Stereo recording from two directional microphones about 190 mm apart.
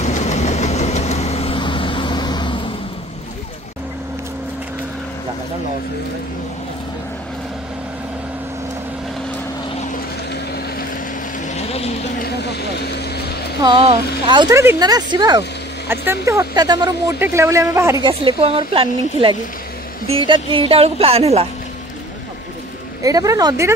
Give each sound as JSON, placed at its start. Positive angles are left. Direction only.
{"t": 0.0, "sound": "vehicle", "side_deg": 35}
{"t": 11.4, "sound": "vehicle", "side_deg": 35}
{"t": 12.2, "sound": "speech", "side_deg": 60}
{"t": 13.6, "sound": "speech", "side_deg": -25}
{"t": 23.0, "sound": "speech", "side_deg": -20}